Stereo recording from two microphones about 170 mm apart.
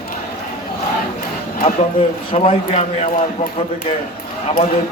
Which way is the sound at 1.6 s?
35° left (ahead or behind).